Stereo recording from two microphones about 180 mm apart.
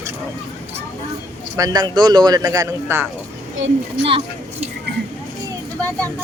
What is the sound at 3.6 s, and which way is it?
Speech, 90° right.